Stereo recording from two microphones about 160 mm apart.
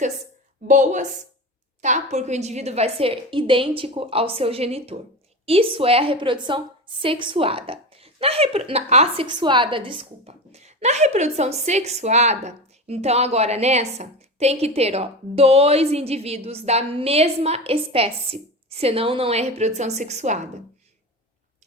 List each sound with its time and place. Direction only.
0.7 s a woman's voice: 50° right (ahead or behind)
9.2 s a woman's voice: 30° right (ahead or behind); by 20.5 s 50° right (ahead or behind)